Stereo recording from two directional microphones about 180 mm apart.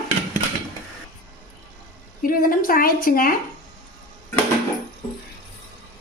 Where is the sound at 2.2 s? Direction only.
50° left (ahead or behind).